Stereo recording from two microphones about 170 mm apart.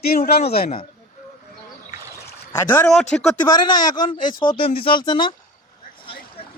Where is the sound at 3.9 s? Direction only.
50° left (ahead or behind).